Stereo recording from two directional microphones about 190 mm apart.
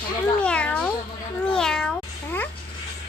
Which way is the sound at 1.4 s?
5° left (ahead or behind).